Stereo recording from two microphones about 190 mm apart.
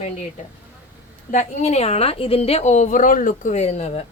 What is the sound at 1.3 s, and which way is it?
A woman's voice, 35° left (ahead or behind).